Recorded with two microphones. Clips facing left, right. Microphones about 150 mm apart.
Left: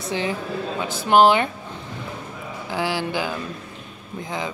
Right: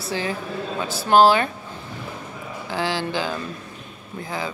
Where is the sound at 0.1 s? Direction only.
20° left (ahead or behind).